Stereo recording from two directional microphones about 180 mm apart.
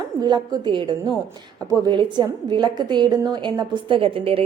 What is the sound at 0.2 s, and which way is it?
A woman's voice, 20° right (ahead or behind).